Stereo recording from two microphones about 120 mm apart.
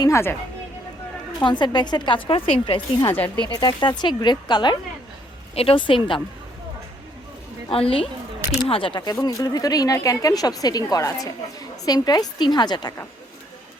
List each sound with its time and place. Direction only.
0.0 s speech: 20° left (ahead or behind)
1.4 s speech: 40° left (ahead or behind)
3.1 s speech: 20° left (ahead or behind)
3.5 s speech: 35° left (ahead or behind)
5.5 s speech: 50° left (ahead or behind)
7.7 s speech: 50° left (ahead or behind)